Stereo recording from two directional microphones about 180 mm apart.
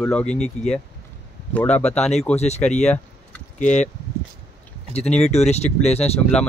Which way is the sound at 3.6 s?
40° left (ahead or behind).